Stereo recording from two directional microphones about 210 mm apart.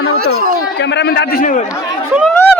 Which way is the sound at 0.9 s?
50° left (ahead or behind).